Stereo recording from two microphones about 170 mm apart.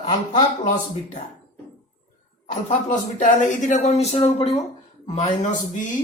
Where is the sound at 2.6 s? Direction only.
45° left (ahead or behind).